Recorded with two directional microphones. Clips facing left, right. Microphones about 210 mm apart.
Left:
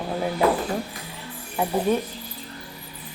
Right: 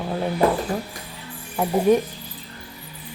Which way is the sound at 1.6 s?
Centre (ahead or behind).